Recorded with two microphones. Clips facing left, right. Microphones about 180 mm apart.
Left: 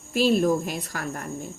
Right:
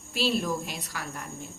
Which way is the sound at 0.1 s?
50° left (ahead or behind).